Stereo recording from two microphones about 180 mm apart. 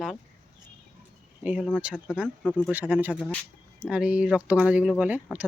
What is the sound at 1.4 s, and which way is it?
Speech, 5° right (ahead or behind).